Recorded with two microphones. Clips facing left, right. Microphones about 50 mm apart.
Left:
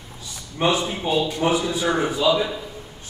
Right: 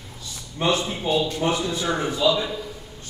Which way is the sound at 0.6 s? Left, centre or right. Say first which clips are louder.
Left 2 dB; centre.